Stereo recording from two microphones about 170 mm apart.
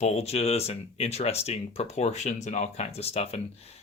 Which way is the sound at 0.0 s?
40° left (ahead or behind).